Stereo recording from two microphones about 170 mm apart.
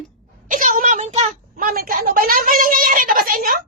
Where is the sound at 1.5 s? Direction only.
55° right (ahead or behind).